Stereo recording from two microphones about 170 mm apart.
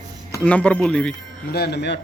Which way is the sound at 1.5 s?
70° left (ahead or behind).